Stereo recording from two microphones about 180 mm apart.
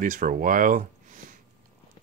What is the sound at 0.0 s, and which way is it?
Speech, 50° right (ahead or behind).